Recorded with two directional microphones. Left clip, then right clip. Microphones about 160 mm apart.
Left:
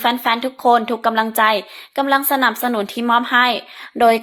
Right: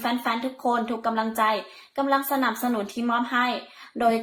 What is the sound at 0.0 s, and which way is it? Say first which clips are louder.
Speech: left 9 dB; 35° left (ahead or behind).